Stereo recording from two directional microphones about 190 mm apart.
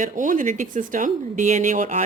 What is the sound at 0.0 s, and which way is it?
A woman's voice, 45° right (ahead or behind).